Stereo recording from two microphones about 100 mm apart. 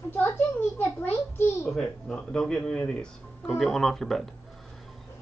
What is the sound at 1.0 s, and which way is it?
Speech, 20° left (ahead or behind).